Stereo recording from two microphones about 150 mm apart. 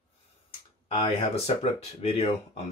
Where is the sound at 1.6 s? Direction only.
45° left (ahead or behind).